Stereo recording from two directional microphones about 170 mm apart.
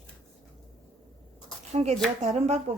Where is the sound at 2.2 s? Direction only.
40° right (ahead or behind).